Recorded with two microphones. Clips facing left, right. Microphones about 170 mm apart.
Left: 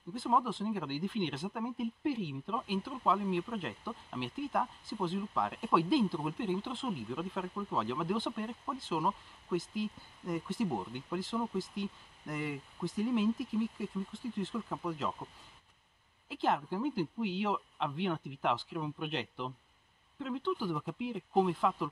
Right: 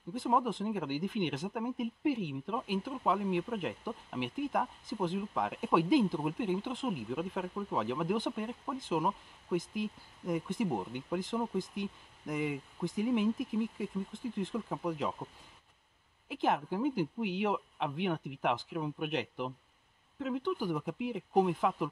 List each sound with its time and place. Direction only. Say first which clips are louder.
0.1 s speech: right 1 dB; 15° right (ahead or behind)
16.3 s speech: right 1 dB; 15° right (ahead or behind)